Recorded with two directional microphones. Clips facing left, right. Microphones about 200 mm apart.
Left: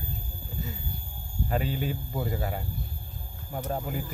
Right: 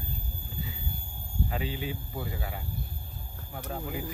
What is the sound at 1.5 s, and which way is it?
Speech, 45° left (ahead or behind).